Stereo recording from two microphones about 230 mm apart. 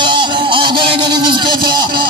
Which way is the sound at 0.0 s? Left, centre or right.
Centre.